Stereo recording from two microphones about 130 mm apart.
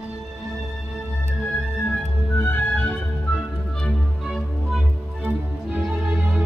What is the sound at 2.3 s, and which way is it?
Music, 15° left (ahead or behind).